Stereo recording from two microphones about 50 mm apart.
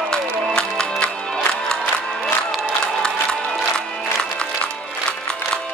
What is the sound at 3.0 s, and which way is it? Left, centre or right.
Music, centre.